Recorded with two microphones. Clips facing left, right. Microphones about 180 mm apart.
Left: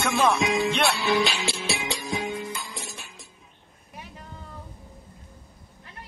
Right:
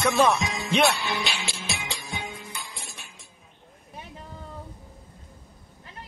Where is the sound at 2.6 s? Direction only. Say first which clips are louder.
Left 5 dB; 40° left (ahead or behind).